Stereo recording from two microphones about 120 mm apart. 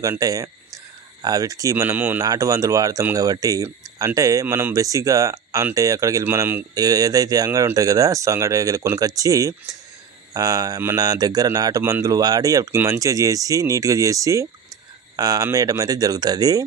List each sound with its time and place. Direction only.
0.2 s speech: 30° right (ahead or behind)
2.1 s speech: 30° right (ahead or behind)